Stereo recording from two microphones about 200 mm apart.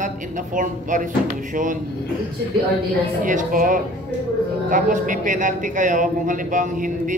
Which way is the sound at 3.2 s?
40° right (ahead or behind).